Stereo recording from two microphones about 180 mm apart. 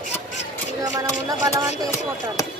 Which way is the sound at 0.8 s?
20° right (ahead or behind).